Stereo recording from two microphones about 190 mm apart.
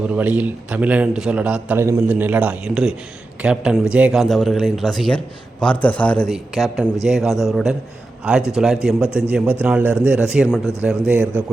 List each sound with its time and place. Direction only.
0.1 s a man's voice: 10° right (ahead or behind)
11.2 s a man's voice: 10° left (ahead or behind)